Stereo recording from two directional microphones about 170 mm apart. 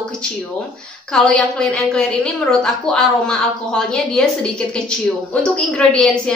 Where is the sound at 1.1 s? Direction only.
5° left (ahead or behind).